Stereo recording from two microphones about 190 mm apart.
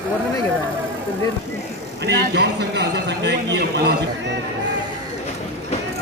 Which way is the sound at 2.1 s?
60° right (ahead or behind).